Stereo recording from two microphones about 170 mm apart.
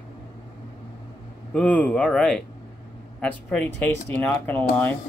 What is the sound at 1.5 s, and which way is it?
Speech, 10° left (ahead or behind).